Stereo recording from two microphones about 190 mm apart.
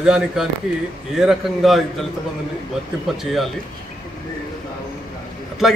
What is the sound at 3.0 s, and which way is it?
Speech, centre (ahead or behind).